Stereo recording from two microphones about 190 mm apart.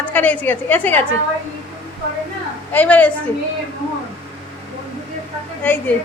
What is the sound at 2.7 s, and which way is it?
Speech, 10° left (ahead or behind).